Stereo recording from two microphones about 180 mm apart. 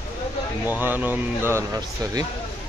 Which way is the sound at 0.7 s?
10° right (ahead or behind).